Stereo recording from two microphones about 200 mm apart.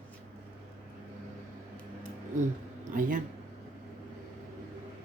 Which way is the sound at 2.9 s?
45° right (ahead or behind).